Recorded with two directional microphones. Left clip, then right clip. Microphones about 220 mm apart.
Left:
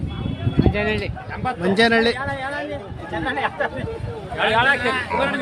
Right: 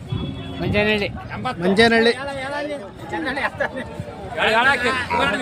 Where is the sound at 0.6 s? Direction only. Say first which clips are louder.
Right 3 dB; 45° right (ahead or behind).